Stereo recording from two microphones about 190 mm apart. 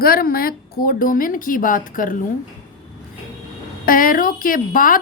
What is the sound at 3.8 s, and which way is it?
A woman's voice, 50° left (ahead or behind).